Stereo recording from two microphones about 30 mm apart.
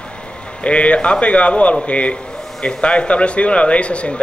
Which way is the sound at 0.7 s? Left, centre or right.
Left.